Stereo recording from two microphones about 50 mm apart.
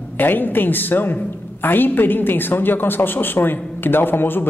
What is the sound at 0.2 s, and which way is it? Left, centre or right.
A woman's voice, left.